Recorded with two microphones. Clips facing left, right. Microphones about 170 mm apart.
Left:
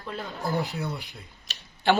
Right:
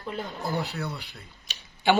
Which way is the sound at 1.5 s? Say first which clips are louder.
Even; centre (ahead or behind).